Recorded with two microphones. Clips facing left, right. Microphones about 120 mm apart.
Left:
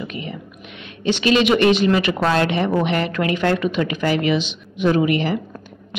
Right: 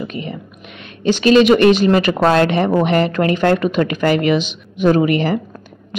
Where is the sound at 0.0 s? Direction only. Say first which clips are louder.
Right 4 dB; 35° right (ahead or behind).